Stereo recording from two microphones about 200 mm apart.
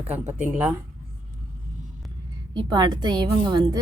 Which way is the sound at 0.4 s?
5° right (ahead or behind).